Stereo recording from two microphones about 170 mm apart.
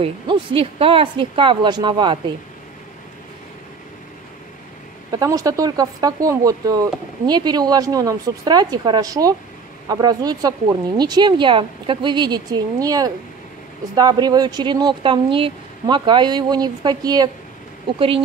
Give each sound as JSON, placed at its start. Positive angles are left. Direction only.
{"t": 0.0, "sound": "speech", "side_deg": -30}
{"t": 5.1, "sound": "speech", "side_deg": -20}